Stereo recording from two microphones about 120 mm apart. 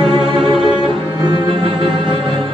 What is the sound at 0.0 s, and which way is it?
Cello, 40° right (ahead or behind).